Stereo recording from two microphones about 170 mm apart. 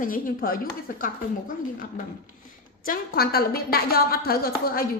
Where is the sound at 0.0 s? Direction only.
55° left (ahead or behind).